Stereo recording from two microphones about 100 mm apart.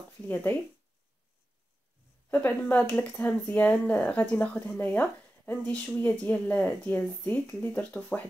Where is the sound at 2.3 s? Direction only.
15° left (ahead or behind).